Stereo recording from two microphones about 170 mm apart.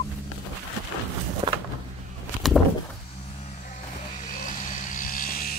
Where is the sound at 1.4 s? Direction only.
25° right (ahead or behind).